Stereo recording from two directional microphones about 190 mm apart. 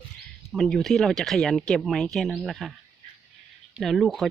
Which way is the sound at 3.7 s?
Centre (ahead or behind).